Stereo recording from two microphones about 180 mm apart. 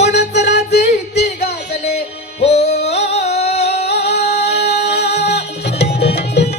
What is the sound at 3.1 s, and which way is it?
Music, 35° left (ahead or behind).